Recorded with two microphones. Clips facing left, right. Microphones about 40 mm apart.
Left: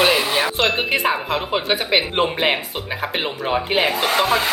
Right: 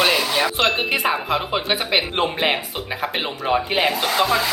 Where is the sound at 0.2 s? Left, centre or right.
Left.